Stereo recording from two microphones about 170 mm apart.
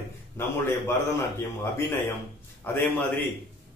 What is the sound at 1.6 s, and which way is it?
A man's voice, 15° left (ahead or behind).